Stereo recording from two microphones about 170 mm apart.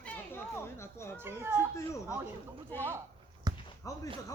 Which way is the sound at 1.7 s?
20° left (ahead or behind).